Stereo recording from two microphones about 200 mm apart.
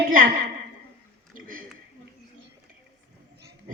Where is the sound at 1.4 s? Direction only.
40° right (ahead or behind).